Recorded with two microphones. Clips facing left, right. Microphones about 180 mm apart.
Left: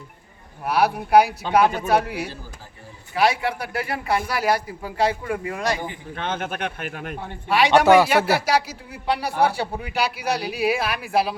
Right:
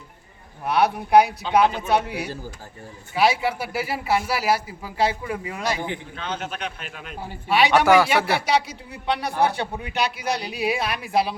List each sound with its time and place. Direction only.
0.6 s speech: 5° left (ahead or behind)
1.4 s speech: 50° left (ahead or behind)
1.9 s speech: centre (ahead or behind)
6.1 s speech: 55° left (ahead or behind)
7.2 s speech: 5° right (ahead or behind)